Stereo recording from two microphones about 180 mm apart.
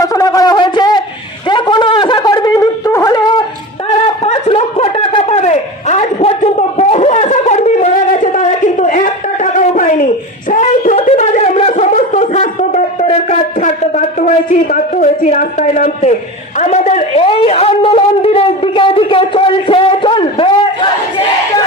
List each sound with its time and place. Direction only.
0.0 s shofar: 20° left (ahead or behind)
3.9 s snicker: 35° left (ahead or behind)
10.5 s wail: 45° left (ahead or behind)
11.1 s wind instrument: 40° left (ahead or behind)
16.6 s a sound: 40° left (ahead or behind)